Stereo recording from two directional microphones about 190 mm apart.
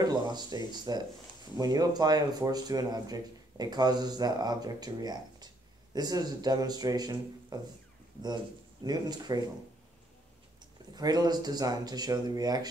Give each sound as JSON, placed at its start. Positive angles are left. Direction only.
{"t": 0.0, "sound": "speech", "side_deg": -20}
{"t": 8.8, "sound": "speech", "side_deg": -20}
{"t": 11.0, "sound": "speech", "side_deg": -20}